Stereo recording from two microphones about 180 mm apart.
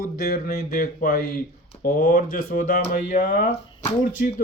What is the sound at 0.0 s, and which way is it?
A man's voice, 55° left (ahead or behind).